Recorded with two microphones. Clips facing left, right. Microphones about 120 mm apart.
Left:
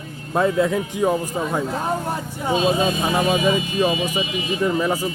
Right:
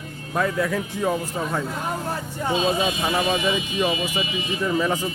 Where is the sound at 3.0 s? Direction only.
10° left (ahead or behind).